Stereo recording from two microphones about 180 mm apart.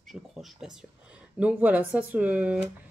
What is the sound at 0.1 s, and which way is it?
Speech, centre (ahead or behind).